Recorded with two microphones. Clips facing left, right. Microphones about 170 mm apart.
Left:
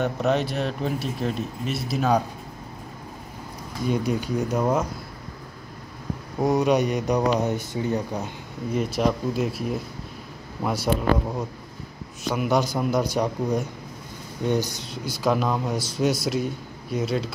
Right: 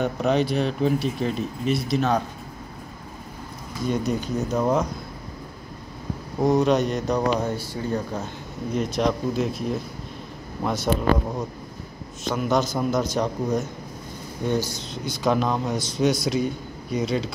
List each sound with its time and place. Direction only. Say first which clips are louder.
0.0 s speech: right 1 dB; centre (ahead or behind)
3.8 s speech: even; 10° left (ahead or behind)
6.4 s speech: right 1 dB; 10° left (ahead or behind)
8.7 s speech: even; 5° left (ahead or behind)
12.3 s speech: even; 10° left (ahead or behind)
15.0 s speech: right 1 dB; 5° left (ahead or behind)